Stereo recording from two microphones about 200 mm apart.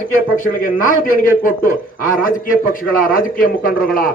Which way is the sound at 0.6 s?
45° left (ahead or behind).